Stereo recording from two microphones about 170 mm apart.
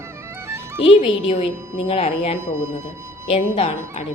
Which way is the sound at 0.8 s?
35° left (ahead or behind).